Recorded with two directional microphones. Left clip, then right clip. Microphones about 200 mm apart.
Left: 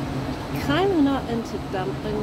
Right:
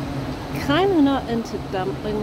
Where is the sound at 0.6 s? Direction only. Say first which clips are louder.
Right 3 dB; 25° right (ahead or behind).